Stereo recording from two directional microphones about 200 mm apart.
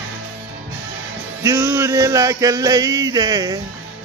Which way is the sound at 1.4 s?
15° right (ahead or behind).